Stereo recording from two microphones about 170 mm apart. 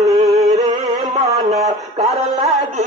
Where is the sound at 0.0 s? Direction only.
20° right (ahead or behind).